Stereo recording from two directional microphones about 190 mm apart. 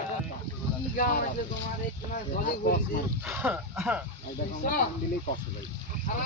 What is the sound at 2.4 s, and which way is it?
Speech, 50° left (ahead or behind).